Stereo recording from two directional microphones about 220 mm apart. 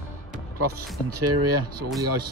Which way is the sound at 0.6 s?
90° right.